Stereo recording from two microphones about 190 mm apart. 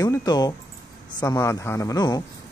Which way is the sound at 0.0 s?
20° left (ahead or behind).